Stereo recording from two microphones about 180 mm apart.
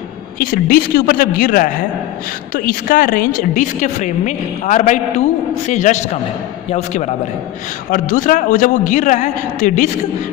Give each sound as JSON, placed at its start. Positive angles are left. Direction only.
{"t": 0.4, "sound": "a man's voice", "side_deg": 55}